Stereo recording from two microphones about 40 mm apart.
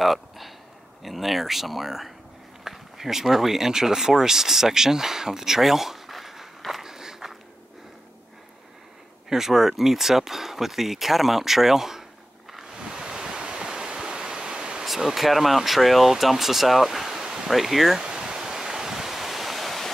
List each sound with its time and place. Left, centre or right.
0.0 s speech: centre
9.3 s speech: centre
12.7 s ocean: centre
14.9 s speech: centre
17.5 s speech: centre
18.0 s ocean: centre